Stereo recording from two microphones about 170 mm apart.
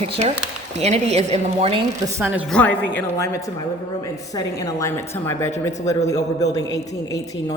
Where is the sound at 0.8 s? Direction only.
40° right (ahead or behind).